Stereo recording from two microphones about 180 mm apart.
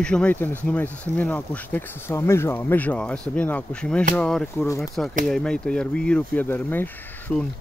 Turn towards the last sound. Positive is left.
turn(degrees=10)  # may be behind; listen again after turning